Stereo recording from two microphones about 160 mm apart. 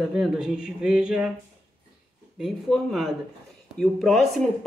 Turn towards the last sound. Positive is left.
turn(degrees=0)  # may be behind; listen again after turning